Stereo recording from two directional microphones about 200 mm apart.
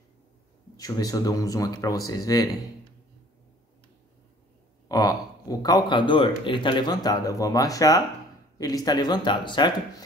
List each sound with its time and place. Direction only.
0.7 s speech: 20° left (ahead or behind)
4.8 s a man's voice: 20° left (ahead or behind)